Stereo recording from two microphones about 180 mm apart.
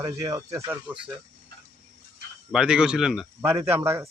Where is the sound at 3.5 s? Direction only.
15° right (ahead or behind).